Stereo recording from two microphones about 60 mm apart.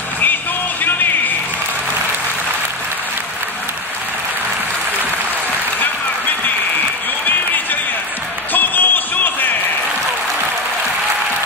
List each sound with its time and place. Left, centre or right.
8.5 s music: left